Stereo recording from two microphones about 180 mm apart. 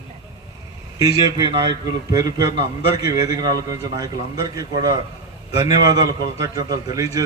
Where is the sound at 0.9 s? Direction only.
20° right (ahead or behind).